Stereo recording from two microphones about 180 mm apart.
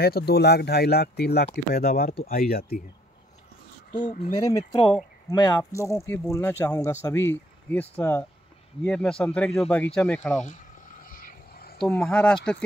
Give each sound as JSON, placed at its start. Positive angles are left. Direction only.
{"t": 0.0, "sound": "speech", "side_deg": 60}
{"t": 4.0, "sound": "speech", "side_deg": 40}
{"t": 4.5, "sound": "speech", "side_deg": 20}
{"t": 11.1, "sound": "vehicle", "side_deg": 50}
{"t": 11.8, "sound": "speech", "side_deg": 10}